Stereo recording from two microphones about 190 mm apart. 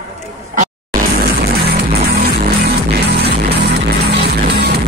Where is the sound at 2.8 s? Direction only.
55° right (ahead or behind).